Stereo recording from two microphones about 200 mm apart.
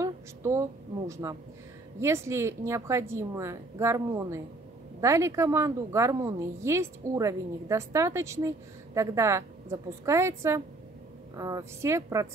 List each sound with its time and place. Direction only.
0.0 s a woman's voice: 15° right (ahead or behind)